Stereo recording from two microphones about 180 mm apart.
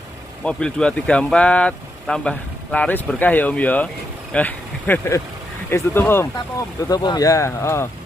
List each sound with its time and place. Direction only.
0.4 s speech: 5° left (ahead or behind)